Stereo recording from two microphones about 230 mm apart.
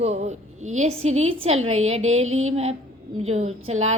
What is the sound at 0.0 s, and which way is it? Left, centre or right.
A woman's voice, right.